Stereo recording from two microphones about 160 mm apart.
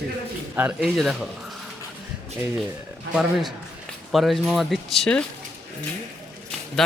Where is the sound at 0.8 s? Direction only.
Centre (ahead or behind).